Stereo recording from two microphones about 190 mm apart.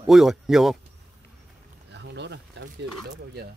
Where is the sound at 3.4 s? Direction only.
60° right (ahead or behind).